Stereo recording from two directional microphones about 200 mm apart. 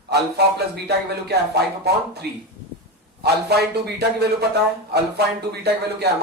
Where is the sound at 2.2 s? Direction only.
55° right (ahead or behind).